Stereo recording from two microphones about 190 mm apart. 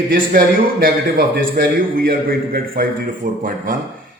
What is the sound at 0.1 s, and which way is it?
A man's voice, 50° right (ahead or behind).